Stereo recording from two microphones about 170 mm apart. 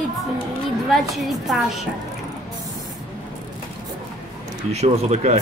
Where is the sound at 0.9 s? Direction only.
Centre (ahead or behind).